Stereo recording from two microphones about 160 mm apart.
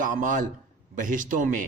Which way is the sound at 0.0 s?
55° right (ahead or behind).